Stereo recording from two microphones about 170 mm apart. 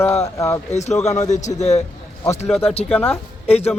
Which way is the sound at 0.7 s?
40° left (ahead or behind).